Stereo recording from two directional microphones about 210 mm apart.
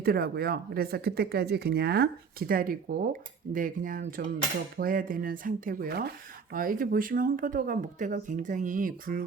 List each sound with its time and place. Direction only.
0.0 s speech: 45° right (ahead or behind)